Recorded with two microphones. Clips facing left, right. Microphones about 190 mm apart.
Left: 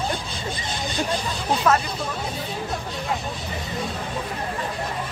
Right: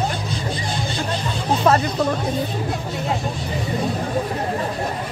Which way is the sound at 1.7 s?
30° right (ahead or behind).